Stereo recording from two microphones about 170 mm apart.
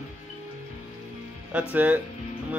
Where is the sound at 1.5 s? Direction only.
10° right (ahead or behind).